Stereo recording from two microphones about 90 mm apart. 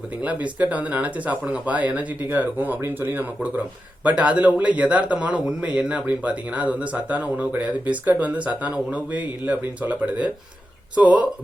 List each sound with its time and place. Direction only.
0.2 s speech: 15° right (ahead or behind)